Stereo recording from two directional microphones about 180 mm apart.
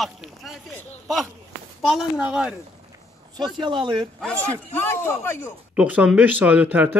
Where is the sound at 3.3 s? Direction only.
25° right (ahead or behind).